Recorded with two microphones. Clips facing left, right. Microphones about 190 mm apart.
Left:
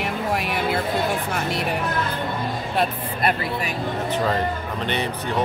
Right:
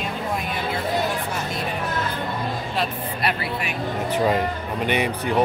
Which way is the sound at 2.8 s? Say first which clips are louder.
Left 4 dB; 50° left (ahead or behind).